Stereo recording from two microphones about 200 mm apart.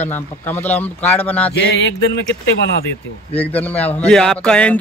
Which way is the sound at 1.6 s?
70° left (ahead or behind).